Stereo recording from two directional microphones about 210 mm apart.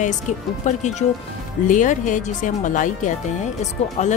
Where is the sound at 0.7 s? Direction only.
35° left (ahead or behind).